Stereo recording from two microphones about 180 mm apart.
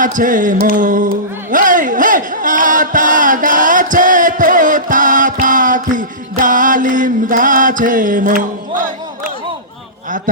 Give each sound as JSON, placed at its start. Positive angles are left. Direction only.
{"t": 0.0, "sound": "music", "side_deg": -45}
{"t": 1.5, "sound": "chant", "side_deg": -45}